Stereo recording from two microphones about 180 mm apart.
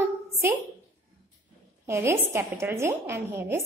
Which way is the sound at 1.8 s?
15° right (ahead or behind).